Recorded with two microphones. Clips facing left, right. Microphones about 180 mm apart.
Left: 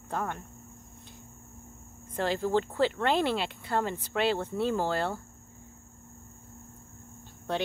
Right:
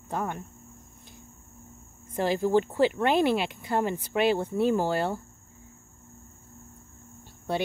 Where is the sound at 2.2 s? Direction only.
15° right (ahead or behind).